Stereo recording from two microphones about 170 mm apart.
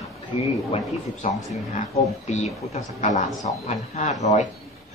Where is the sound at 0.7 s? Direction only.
40° left (ahead or behind).